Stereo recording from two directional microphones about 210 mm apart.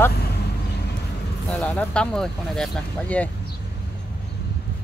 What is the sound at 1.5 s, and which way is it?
Speech, 5° left (ahead or behind).